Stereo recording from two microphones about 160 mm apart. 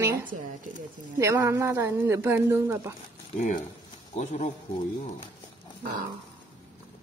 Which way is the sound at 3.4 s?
55° left (ahead or behind).